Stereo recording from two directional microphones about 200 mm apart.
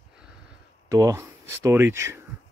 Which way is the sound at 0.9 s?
15° right (ahead or behind).